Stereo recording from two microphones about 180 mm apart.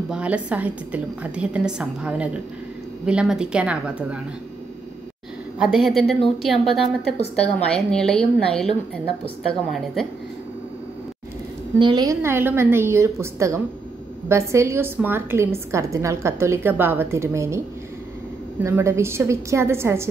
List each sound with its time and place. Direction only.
0.1 s a woman's voice: 5° right (ahead or behind)
5.6 s speech: centre (ahead or behind)
7.2 s a woman's voice: 35° left (ahead or behind)
7.5 s speech: 5° left (ahead or behind)
9.7 s speech: centre (ahead or behind)
11.8 s a woman's voice: 25° right (ahead or behind)
18.6 s a woman's voice: 15° right (ahead or behind)